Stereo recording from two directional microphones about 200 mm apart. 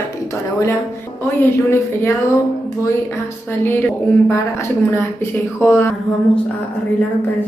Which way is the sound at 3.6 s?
10° left (ahead or behind).